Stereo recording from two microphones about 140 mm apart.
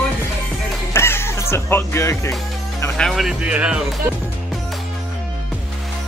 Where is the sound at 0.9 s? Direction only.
15° left (ahead or behind).